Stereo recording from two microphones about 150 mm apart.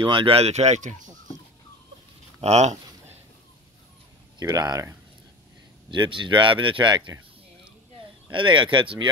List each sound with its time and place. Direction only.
0.0 s speech: 35° right (ahead or behind); by 1.1 s 55° right (ahead or behind)
2.4 s a sound: 50° right (ahead or behind)
4.4 s speech: 25° right (ahead or behind)
5.9 s speech: 35° right (ahead or behind)
8.3 s speech: 35° right (ahead or behind)